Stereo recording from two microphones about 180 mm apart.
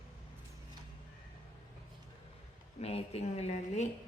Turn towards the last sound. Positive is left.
turn(degrees=40)  # may be behind; listen again after turning